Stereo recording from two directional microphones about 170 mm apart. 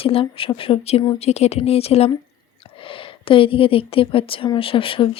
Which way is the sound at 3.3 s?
30° left (ahead or behind).